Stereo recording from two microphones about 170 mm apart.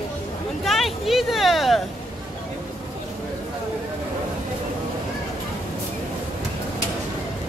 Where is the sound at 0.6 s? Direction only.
Centre (ahead or behind).